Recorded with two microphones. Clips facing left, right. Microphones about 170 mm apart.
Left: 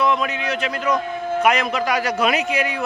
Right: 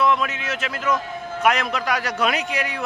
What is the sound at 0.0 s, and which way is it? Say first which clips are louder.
A man's voice: left 1 dB; centre (ahead or behind).